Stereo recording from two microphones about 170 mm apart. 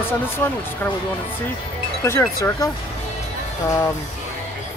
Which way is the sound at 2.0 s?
15° left (ahead or behind).